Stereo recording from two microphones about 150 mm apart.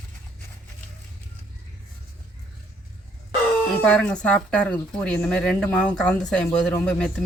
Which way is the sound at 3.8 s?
5° left (ahead or behind).